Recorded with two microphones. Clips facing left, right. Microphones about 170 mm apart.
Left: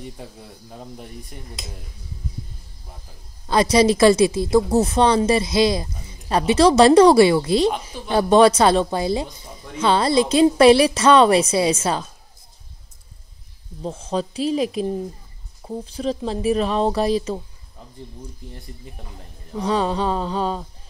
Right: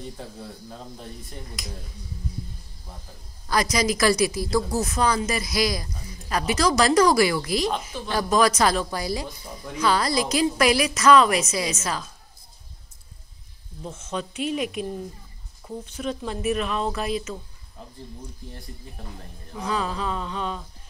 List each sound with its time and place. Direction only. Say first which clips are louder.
1.6 s a woman's voice: even; 25° left (ahead or behind)
3.4 s a woman's voice: left 7 dB; 30° left (ahead or behind)
13.8 s speech: left 7 dB; 35° left (ahead or behind)
19.6 s speech: left 6 dB; 30° left (ahead or behind)